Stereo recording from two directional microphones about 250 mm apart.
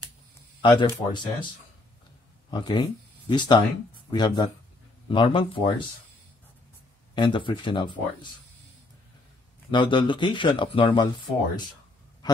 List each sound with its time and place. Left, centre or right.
0.6 s speech: centre
2.5 s speech: centre
7.2 s speech: centre
9.7 s speech: centre